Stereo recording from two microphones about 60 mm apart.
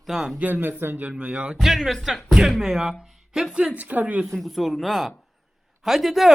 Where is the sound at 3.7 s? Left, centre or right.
Right.